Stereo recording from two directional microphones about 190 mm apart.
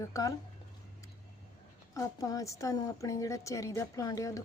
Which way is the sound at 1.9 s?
20° left (ahead or behind).